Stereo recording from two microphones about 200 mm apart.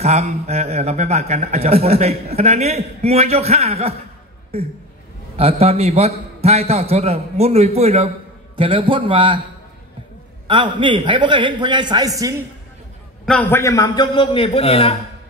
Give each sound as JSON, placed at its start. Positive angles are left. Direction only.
{"t": 0.0, "sound": "a man's voice", "side_deg": -35}
{"t": 10.4, "sound": "a man's voice", "side_deg": -25}
{"t": 13.2, "sound": "a man's voice", "side_deg": 5}